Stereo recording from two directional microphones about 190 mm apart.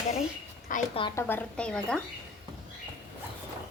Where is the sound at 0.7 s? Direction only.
45° left (ahead or behind).